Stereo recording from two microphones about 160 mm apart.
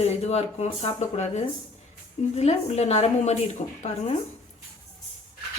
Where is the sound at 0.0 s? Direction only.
40° left (ahead or behind).